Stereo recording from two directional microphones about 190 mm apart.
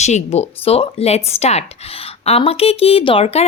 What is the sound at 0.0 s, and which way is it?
A woman's voice, 35° left (ahead or behind).